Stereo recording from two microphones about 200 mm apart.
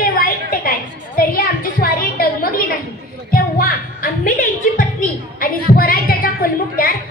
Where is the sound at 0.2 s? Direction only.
45° left (ahead or behind).